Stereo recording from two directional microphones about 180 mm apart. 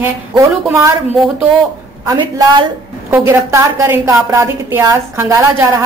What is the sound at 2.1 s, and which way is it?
A woman's voice, 25° right (ahead or behind).